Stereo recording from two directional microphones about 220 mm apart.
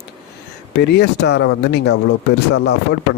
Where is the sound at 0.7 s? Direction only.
50° left (ahead or behind).